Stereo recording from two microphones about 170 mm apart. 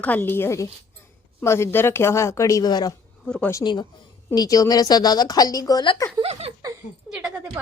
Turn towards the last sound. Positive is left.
turn(degrees=-5)  # may be behind; listen again after turning